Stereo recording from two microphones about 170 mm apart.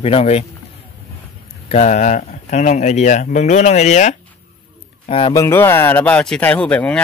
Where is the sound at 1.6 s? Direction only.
40° left (ahead or behind).